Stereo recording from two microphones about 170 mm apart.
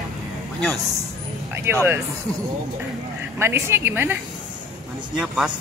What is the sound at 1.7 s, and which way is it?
Speech, 15° right (ahead or behind).